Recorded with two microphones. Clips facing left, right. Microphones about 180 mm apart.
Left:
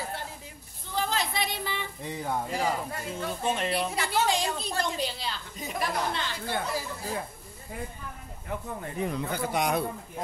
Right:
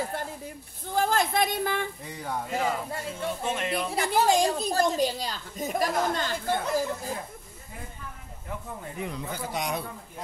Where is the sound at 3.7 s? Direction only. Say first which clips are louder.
Right 2 dB; 40° right (ahead or behind).